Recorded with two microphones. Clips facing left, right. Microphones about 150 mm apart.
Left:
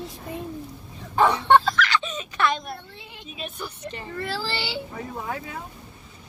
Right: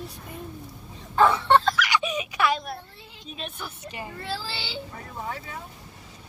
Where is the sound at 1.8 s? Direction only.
15° right (ahead or behind).